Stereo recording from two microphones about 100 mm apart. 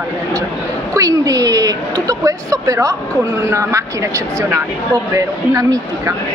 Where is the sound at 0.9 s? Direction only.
35° right (ahead or behind).